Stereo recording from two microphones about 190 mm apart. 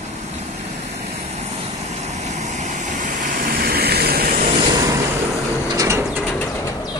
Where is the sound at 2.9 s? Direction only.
40° right (ahead or behind).